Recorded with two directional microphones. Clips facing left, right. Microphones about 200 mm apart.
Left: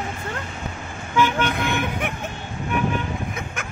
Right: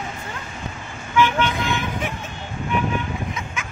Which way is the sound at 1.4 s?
60° left (ahead or behind).